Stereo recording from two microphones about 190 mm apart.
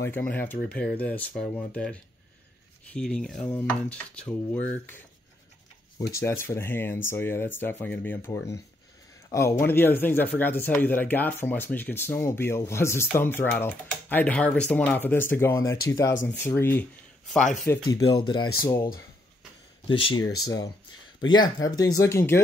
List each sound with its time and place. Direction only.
0.0 s speech: 10° left (ahead or behind)
6.1 s speech: 15° left (ahead or behind)
17.3 s speech: centre (ahead or behind)
17.9 s speech: 25° left (ahead or behind)
19.9 s speech: 25° left (ahead or behind)